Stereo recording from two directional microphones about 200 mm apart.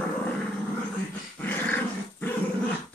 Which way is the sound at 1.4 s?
10° left (ahead or behind).